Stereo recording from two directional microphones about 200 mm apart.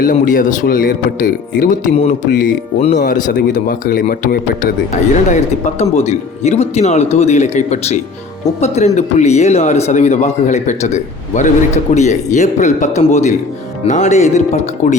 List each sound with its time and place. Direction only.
0.0 s speech: 40° left (ahead or behind)
5.8 s speech: 35° left (ahead or behind)